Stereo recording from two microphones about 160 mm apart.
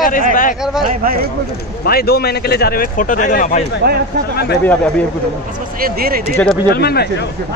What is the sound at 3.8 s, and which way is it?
Speech, 90° right.